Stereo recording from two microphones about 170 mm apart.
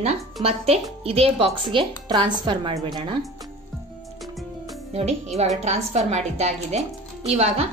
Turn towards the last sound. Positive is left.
turn(degrees=-35)  # may be behind; listen again after turning